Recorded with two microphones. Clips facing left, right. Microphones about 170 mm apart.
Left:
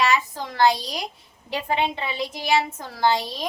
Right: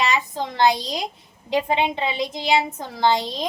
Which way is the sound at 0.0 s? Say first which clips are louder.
Even; 20° right (ahead or behind).